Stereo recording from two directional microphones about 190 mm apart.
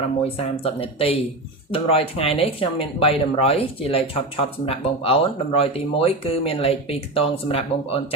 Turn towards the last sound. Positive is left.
turn(degrees=30)  # may be behind; listen again after turning